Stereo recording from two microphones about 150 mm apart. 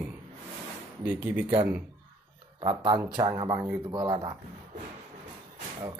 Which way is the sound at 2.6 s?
30° right (ahead or behind).